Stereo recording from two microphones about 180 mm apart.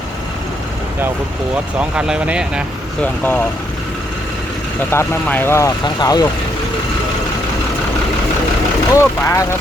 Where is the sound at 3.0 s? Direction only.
10° left (ahead or behind).